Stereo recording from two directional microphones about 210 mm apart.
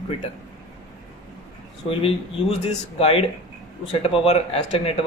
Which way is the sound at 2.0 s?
30° left (ahead or behind).